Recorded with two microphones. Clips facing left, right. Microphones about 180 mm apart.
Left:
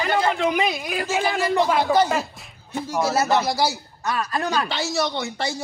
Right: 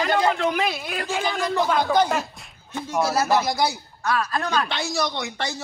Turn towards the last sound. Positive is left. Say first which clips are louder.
# left 2 dB
turn(degrees=5)  # may be behind; listen again after turning